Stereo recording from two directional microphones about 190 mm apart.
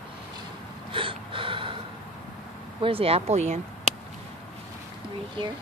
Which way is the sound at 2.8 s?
30° right (ahead or behind).